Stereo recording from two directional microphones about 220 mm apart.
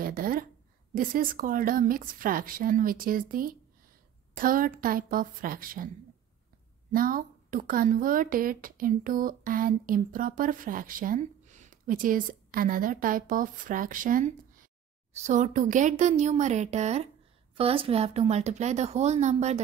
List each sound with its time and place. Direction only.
0.0 s a sound: 40° right (ahead or behind)
0.9 s a woman's voice: 40° right (ahead or behind)
6.9 s a woman's voice: 40° right (ahead or behind)